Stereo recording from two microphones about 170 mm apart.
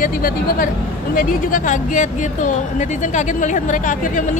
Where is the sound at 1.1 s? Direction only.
50° left (ahead or behind).